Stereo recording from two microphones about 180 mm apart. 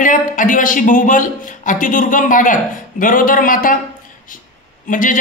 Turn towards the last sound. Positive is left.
turn(degrees=45)  # may be behind; listen again after turning